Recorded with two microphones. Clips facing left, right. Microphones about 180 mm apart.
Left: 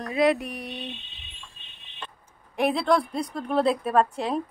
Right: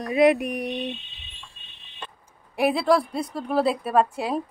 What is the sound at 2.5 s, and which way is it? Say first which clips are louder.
A woman's voice: right 2 dB; 5° right (ahead or behind).